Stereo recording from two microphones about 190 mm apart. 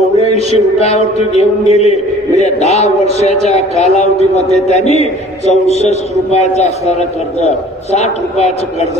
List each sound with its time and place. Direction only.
0.5 s a man's voice: 35° left (ahead or behind)